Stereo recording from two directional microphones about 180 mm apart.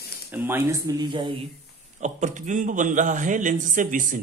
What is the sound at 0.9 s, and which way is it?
Speech, 25° right (ahead or behind).